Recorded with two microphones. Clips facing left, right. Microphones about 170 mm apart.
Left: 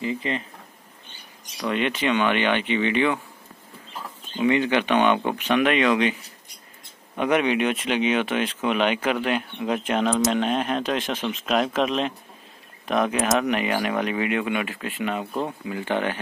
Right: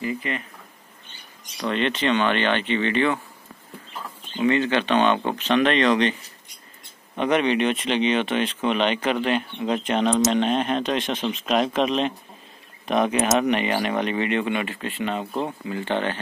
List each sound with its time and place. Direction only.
0.0 s speech: 25° left (ahead or behind)
1.6 s speech: 10° left (ahead or behind)
4.4 s speech: 15° left (ahead or behind)
7.2 s speech: 10° left (ahead or behind)